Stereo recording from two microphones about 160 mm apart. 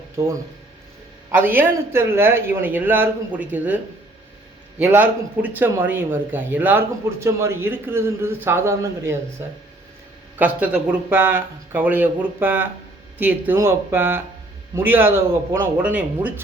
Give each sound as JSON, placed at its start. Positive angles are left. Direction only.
{"t": 0.2, "sound": "speech", "side_deg": -15}
{"t": 4.8, "sound": "speech", "side_deg": -10}
{"t": 10.3, "sound": "speech", "side_deg": -10}